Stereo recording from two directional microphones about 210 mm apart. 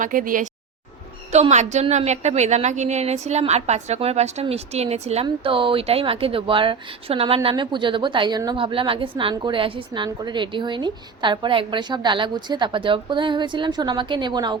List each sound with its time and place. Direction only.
0.0 s a woman's voice: 40° right (ahead or behind); by 14.6 s 20° right (ahead or behind)